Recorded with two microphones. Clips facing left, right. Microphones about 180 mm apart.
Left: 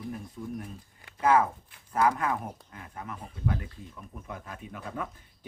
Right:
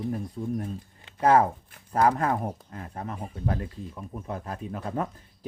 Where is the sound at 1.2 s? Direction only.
35° right (ahead or behind).